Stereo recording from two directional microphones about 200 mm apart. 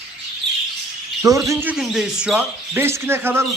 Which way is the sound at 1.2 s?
15° right (ahead or behind).